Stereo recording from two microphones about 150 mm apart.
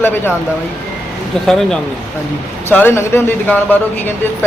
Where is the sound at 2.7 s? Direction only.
15° left (ahead or behind).